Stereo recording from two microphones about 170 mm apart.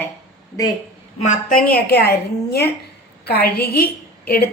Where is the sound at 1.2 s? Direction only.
45° left (ahead or behind).